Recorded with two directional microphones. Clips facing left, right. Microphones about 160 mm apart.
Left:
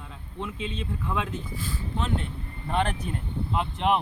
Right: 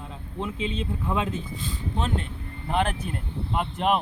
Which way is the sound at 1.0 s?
20° right (ahead or behind).